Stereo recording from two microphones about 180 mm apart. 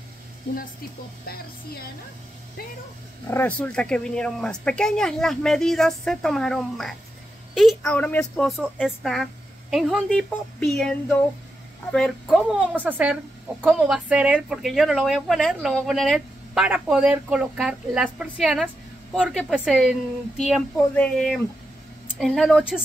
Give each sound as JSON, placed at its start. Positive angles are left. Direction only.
{"t": 1.2, "sound": "speech", "side_deg": 55}
{"t": 3.3, "sound": "speech", "side_deg": 10}